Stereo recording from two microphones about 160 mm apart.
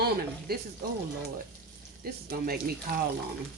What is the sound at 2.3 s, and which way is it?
Speech, 70° right (ahead or behind).